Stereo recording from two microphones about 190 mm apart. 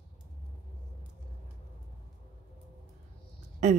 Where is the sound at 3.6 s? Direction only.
35° right (ahead or behind).